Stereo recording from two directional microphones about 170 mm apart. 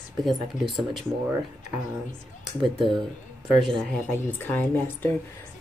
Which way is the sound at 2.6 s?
30° right (ahead or behind).